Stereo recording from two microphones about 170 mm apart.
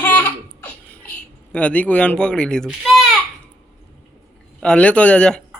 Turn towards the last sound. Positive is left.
turn(degrees=5)  # may be behind; listen again after turning